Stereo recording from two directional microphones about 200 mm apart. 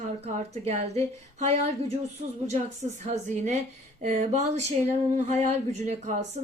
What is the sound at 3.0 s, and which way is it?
Speech, 35° right (ahead or behind).